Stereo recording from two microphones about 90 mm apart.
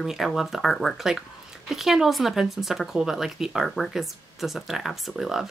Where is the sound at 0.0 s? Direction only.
5° right (ahead or behind).